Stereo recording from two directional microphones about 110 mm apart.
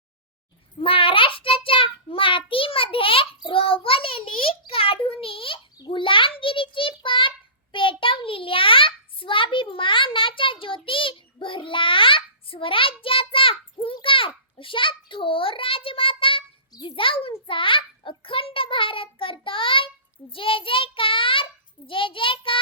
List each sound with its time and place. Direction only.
0.8 s child singing: 55° left (ahead or behind)
5.7 s a sound: 45° left (ahead or behind)
6.4 s a child's voice: 50° left (ahead or behind)